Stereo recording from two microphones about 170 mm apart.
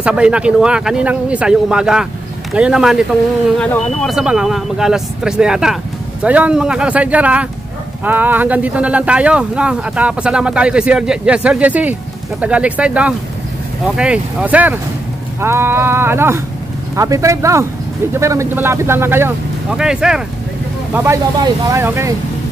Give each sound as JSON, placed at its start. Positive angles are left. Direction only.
{"t": 0.0, "sound": "speech", "side_deg": -5}
{"t": 20.9, "sound": "speech", "side_deg": -15}